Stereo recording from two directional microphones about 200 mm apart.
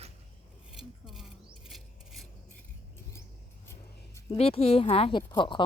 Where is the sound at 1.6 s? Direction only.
Centre (ahead or behind).